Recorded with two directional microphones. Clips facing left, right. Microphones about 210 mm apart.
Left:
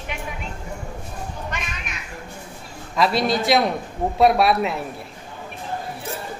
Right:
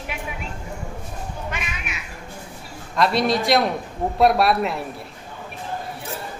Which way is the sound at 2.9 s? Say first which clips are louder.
Even; centre (ahead or behind).